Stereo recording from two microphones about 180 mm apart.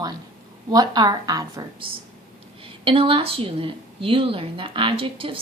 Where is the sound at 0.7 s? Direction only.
20° right (ahead or behind).